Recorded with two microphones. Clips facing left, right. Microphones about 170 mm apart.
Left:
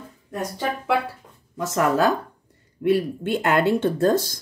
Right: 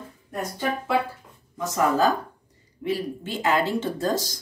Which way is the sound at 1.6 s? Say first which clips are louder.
Left 2 dB; 75° left (ahead or behind).